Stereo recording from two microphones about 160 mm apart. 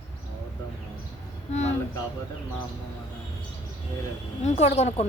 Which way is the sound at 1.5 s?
45° left (ahead or behind).